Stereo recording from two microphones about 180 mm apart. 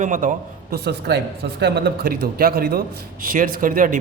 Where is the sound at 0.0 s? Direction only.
45° right (ahead or behind).